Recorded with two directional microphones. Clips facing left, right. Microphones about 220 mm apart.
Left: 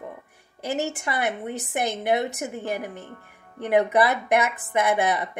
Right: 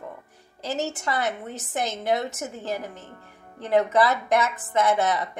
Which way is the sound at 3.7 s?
15° left (ahead or behind).